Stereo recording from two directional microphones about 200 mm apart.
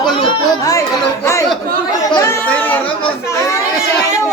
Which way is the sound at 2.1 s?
15° left (ahead or behind).